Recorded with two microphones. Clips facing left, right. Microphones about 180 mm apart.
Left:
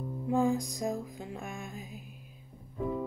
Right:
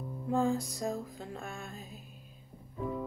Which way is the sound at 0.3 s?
15° left (ahead or behind).